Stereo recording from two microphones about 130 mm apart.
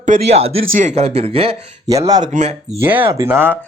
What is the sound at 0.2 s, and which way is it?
Speech, 55° right (ahead or behind).